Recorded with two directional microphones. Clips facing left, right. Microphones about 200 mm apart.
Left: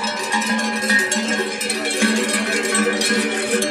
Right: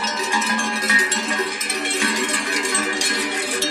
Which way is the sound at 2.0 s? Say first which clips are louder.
Left 8 dB; 65° left (ahead or behind).